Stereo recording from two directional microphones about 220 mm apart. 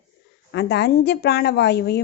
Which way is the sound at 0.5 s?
50° left (ahead or behind).